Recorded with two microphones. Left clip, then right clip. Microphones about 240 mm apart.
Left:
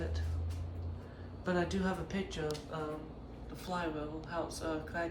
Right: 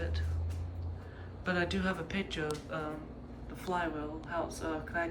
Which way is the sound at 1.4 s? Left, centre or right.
Centre.